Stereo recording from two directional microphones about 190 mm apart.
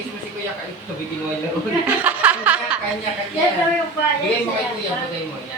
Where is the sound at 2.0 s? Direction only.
10° right (ahead or behind).